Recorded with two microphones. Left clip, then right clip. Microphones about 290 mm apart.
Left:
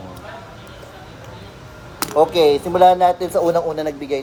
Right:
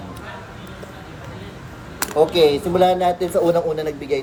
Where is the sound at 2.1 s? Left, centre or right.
Centre.